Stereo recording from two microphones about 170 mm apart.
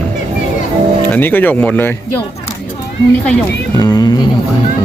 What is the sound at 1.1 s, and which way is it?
Speech, 10° left (ahead or behind).